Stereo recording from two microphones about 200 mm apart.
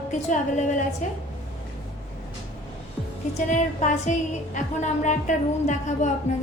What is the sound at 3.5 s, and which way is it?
A woman's voice, 35° left (ahead or behind).